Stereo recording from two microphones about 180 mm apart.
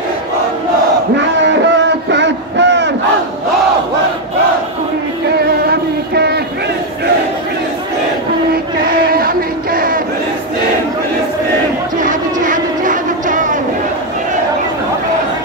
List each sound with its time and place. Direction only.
1.1 s a sound: 80° right
5.7 s music: 65° right (ahead or behind)
8.7 s chant: 55° right (ahead or behind)
12.0 s vehicle: 45° right (ahead or behind)